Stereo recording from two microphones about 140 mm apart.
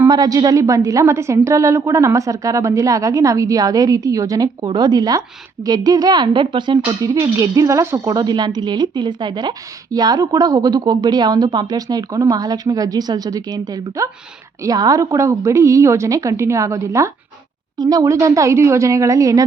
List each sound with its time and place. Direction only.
0.1 s speech: 30° right (ahead or behind)